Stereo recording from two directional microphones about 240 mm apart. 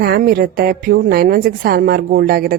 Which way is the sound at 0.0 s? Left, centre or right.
Right.